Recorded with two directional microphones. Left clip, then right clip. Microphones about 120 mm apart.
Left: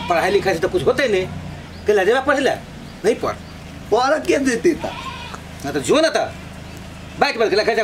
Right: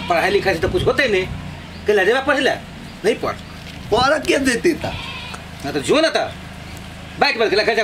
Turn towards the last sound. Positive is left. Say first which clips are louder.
# right 1 dB
turn(degrees=5)  # may be behind; listen again after turning